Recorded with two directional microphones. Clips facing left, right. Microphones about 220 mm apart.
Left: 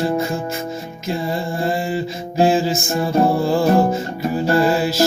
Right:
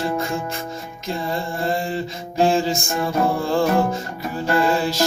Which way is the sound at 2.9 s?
30° left (ahead or behind).